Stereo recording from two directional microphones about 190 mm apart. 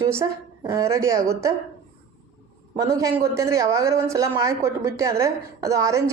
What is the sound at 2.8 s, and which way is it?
Speech, 15° right (ahead or behind).